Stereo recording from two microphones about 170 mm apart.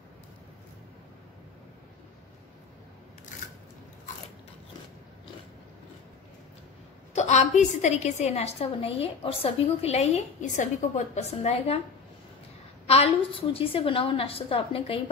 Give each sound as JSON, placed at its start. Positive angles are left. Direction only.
{"t": 7.2, "sound": "a woman's voice", "side_deg": 45}
{"t": 12.8, "sound": "a woman's voice", "side_deg": 35}